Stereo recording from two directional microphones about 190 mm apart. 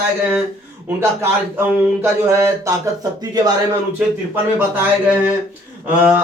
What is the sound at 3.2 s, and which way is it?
Mantra, 20° right (ahead or behind).